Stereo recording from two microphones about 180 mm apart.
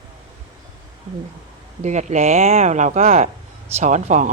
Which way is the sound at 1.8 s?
40° right (ahead or behind).